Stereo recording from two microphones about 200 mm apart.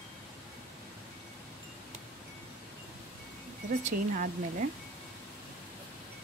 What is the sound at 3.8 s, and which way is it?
Speech, 40° right (ahead or behind).